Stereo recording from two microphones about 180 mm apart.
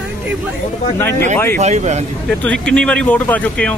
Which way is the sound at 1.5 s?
40° right (ahead or behind).